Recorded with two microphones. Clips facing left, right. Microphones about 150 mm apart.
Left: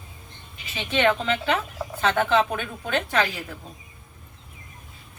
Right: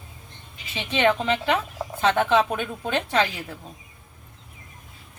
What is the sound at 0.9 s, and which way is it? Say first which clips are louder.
A woman's voice: right 1 dB; 15° right (ahead or behind).